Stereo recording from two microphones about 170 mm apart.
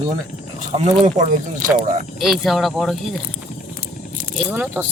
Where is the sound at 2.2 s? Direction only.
Centre (ahead or behind).